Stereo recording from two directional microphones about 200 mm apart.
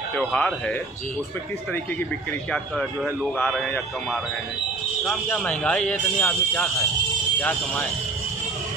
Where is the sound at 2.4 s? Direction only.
5° left (ahead or behind).